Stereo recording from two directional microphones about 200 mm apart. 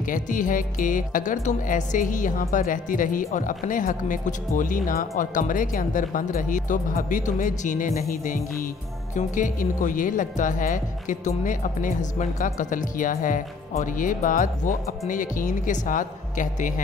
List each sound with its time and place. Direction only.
0.0 s speech: 40° left (ahead or behind)
8.1 s music: 45° left (ahead or behind)
9.1 s speech: 40° left (ahead or behind)